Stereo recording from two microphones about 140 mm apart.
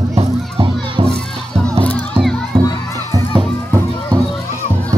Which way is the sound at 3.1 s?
25° right (ahead or behind).